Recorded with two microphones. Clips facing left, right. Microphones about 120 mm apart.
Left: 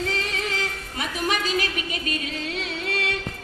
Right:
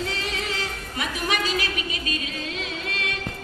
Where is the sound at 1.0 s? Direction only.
40° left (ahead or behind).